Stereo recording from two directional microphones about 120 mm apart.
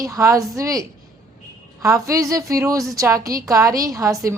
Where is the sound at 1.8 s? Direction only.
25° right (ahead or behind).